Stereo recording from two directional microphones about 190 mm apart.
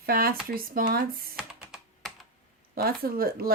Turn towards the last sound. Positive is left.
turn(degrees=-50)  # may be behind; listen again after turning